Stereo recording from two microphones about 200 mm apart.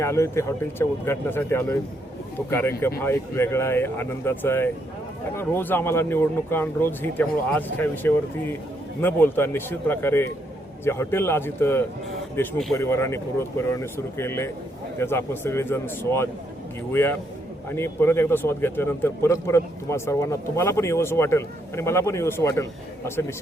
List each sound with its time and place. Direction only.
0.0 s speech: 15° left (ahead or behind)
12.4 s a man's voice: centre (ahead or behind)
12.7 s speech: 15° left (ahead or behind)